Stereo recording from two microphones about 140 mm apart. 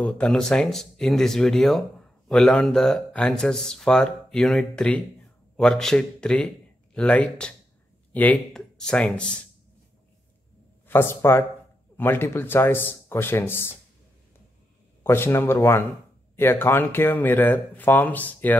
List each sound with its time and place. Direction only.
0.0 s a man's voice: 5° left (ahead or behind)
10.9 s speech: 15° left (ahead or behind)
15.0 s speech: 20° left (ahead or behind)